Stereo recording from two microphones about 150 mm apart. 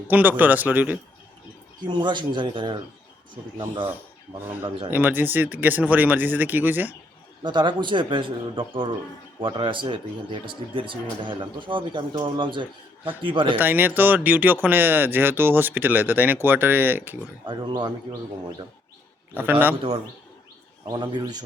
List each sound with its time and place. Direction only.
0.1 s speech: 10° right (ahead or behind)
1.9 s speech: 30° right (ahead or behind)
4.4 s speech: 15° right (ahead or behind)
7.4 s speech: 30° right (ahead or behind)
13.6 s speech: 15° right (ahead or behind)
17.4 s speech: 30° right (ahead or behind)
19.3 s speech: 15° right (ahead or behind)
20.8 s a man's voice: 30° right (ahead or behind)